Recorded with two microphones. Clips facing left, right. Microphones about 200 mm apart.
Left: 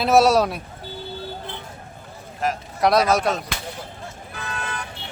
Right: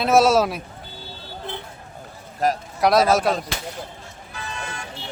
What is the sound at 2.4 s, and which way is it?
Speech, 40° right (ahead or behind).